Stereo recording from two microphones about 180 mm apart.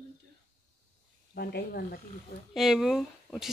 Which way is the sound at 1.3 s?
60° left (ahead or behind).